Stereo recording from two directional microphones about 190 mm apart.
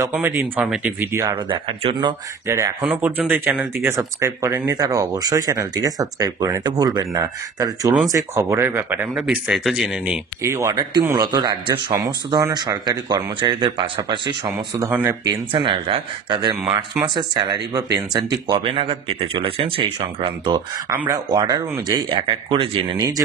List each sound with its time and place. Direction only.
0.0 s speech: 10° right (ahead or behind)
1.5 s speech: 30° right (ahead or behind)
2.4 s speech: 15° right (ahead or behind)
10.4 s speech: 15° right (ahead or behind)
14.9 s speech: 10° right (ahead or behind)
15.2 s speech: 25° right (ahead or behind)